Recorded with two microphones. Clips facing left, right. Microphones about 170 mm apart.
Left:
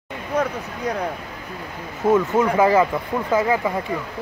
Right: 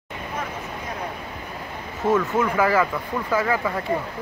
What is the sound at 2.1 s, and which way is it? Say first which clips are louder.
Speech: left 4 dB; 20° left (ahead or behind).